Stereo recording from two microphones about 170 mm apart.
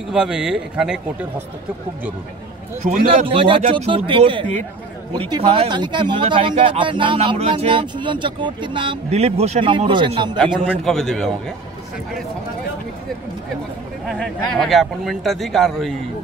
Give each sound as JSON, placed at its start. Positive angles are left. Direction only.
{"t": 0.1, "sound": "speech", "side_deg": -5}
{"t": 3.1, "sound": "a man's voice", "side_deg": -35}
{"t": 10.7, "sound": "speech", "side_deg": 5}
{"t": 14.0, "sound": "speech", "side_deg": 0}